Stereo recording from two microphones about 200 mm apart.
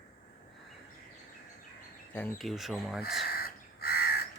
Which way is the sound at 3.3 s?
50° left (ahead or behind).